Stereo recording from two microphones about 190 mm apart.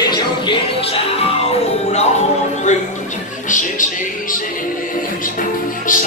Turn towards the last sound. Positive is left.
turn(degrees=45)  # may be behind; listen again after turning